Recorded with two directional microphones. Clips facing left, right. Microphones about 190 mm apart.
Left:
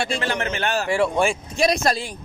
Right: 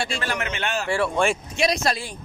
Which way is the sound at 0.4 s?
35° left (ahead or behind).